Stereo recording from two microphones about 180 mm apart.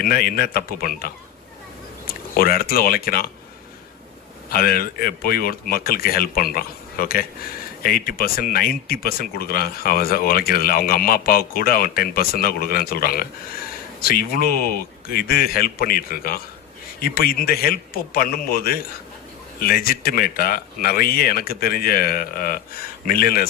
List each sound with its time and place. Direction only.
0.0 s speech: 55° left (ahead or behind)
2.3 s speech: 55° left (ahead or behind)
4.4 s speech: 55° left (ahead or behind)